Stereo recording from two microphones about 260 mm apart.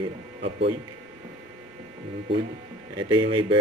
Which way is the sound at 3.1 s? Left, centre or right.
Centre.